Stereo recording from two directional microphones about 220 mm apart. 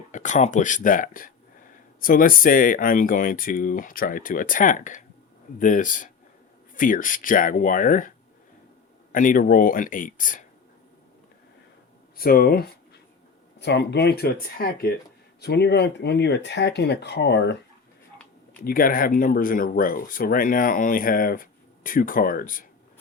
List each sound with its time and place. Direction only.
0.1 s speech: 35° left (ahead or behind)
9.1 s speech: 40° left (ahead or behind)
12.1 s speech: 40° left (ahead or behind)
18.6 s speech: 40° left (ahead or behind)